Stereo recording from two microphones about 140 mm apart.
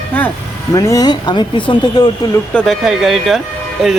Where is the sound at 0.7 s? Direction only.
25° left (ahead or behind).